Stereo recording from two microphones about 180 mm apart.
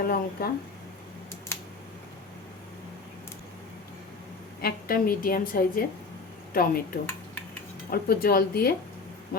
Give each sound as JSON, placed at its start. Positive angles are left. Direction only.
{"t": 0.0, "sound": "speech", "side_deg": 55}
{"t": 4.6, "sound": "a woman's voice", "side_deg": 55}